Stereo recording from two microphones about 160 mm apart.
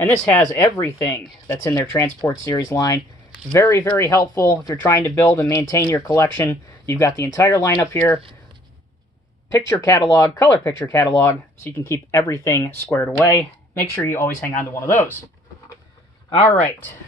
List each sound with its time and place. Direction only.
0.0 s speech: 10° left (ahead or behind)
9.5 s speech: 20° left (ahead or behind)